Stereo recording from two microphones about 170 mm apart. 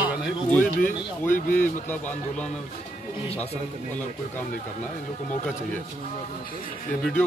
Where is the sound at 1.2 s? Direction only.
50° left (ahead or behind).